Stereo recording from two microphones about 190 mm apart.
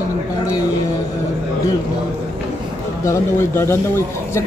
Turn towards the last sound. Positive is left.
turn(degrees=15)  # may be behind; listen again after turning